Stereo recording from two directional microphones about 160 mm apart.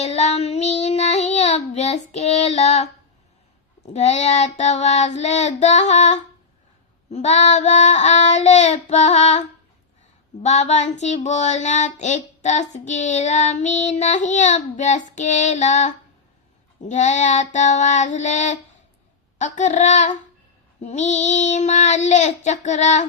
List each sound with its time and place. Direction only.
0.0 s child singing: 40° left (ahead or behind)
3.9 s child singing: 45° left (ahead or behind)
10.4 s child singing: 45° left (ahead or behind)